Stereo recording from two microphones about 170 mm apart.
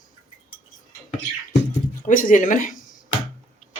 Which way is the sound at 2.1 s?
50° left (ahead or behind).